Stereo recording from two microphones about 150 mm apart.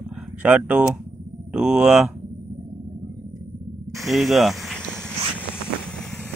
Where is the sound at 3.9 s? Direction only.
Centre (ahead or behind).